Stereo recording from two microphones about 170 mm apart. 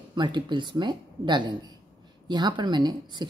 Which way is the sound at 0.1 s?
25° right (ahead or behind).